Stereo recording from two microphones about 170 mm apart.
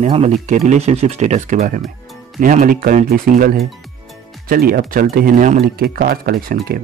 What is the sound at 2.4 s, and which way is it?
Speech, 55° right (ahead or behind).